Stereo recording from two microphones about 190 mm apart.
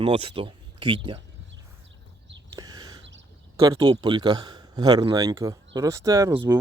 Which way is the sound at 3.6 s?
20° right (ahead or behind).